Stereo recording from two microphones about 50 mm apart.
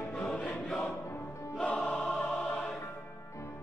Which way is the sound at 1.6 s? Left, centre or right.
Left.